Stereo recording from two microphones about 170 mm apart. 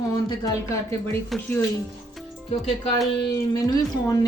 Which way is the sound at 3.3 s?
20° left (ahead or behind).